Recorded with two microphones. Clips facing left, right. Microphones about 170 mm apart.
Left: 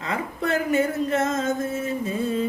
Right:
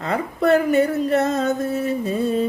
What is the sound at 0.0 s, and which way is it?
Speech, 60° right (ahead or behind).